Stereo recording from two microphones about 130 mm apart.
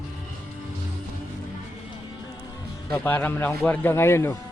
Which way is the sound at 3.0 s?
15° left (ahead or behind).